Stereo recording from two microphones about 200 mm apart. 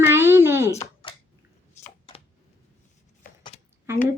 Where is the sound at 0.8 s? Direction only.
25° left (ahead or behind).